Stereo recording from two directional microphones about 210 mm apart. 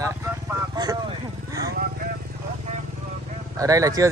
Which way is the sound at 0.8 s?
20° right (ahead or behind).